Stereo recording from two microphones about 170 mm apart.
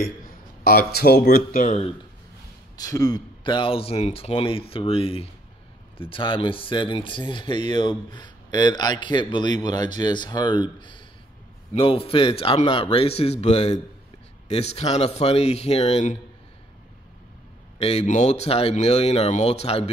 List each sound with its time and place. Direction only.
0.7 s speech: 70° left (ahead or behind); by 1.9 s 45° left (ahead or behind)
2.8 s a man's voice: 20° left (ahead or behind); by 16.2 s 40° left (ahead or behind)
17.7 s speech: 35° left (ahead or behind)